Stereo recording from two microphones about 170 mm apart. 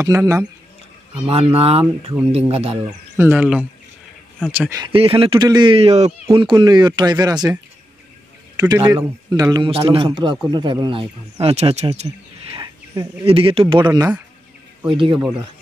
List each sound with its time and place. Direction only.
0.0 s speech: 20° right (ahead or behind)
1.2 s speech: 35° right (ahead or behind)
2.7 s speech: 10° right (ahead or behind)
4.7 s speech: 30° right (ahead or behind)
6.2 s a man's voice: 25° right (ahead or behind)
8.5 s a man's voice: 20° right (ahead or behind)
9.7 s a man's voice: 35° right (ahead or behind)
12.5 s a sound: 20° right (ahead or behind)
13.2 s a man's voice: 35° right (ahead or behind)